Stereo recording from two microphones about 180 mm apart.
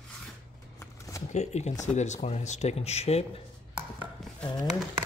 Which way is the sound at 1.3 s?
40° left (ahead or behind).